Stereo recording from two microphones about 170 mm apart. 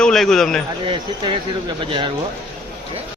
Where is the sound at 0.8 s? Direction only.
30° right (ahead or behind).